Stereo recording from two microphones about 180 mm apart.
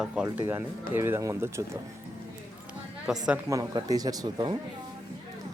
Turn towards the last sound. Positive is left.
turn(degrees=-25)  # may be behind; listen again after turning